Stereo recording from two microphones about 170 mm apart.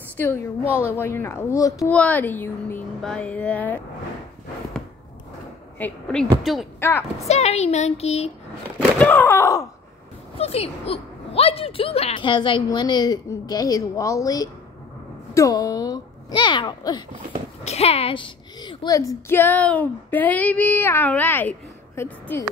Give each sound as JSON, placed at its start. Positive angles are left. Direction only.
{"t": 0.8, "sound": "a woman's voice", "side_deg": 15}
{"t": 5.8, "sound": "a woman's voice", "side_deg": 5}
{"t": 6.8, "sound": "speech", "side_deg": 15}
{"t": 7.2, "sound": "speech", "side_deg": 40}
{"t": 8.7, "sound": "speech", "side_deg": 10}
{"t": 10.4, "sound": "a woman's voice", "side_deg": 35}
{"t": 17.6, "sound": "a woman's voice", "side_deg": 35}